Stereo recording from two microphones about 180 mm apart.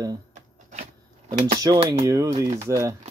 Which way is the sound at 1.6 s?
25° right (ahead or behind).